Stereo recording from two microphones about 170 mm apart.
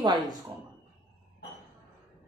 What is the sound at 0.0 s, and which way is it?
Speech, 25° right (ahead or behind).